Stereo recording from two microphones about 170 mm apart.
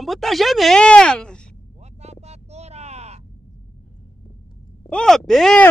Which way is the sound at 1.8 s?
40° right (ahead or behind).